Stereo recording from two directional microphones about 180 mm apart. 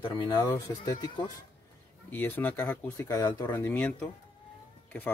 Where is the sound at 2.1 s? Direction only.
10° left (ahead or behind).